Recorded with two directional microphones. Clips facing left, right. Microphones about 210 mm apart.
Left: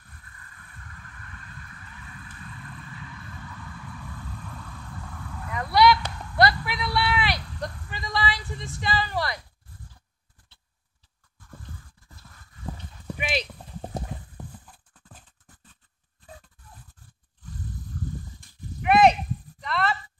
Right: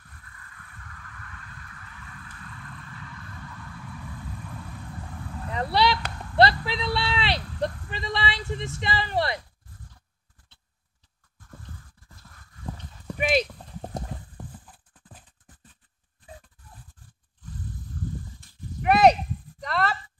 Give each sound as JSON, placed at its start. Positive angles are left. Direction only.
{"t": 5.1, "sound": "horse", "side_deg": -30}
{"t": 13.2, "sound": "clip-clop", "side_deg": -45}
{"t": 13.9, "sound": "clip-clop", "side_deg": 5}
{"t": 18.8, "sound": "horse", "side_deg": -40}
{"t": 19.6, "sound": "a sound", "side_deg": -40}